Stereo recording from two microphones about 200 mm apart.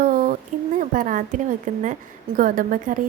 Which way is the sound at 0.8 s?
40° right (ahead or behind).